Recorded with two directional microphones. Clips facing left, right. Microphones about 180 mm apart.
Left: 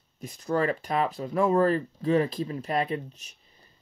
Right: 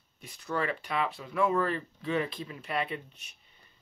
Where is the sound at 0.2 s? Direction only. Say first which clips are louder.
Left 6 dB; 45° left (ahead or behind).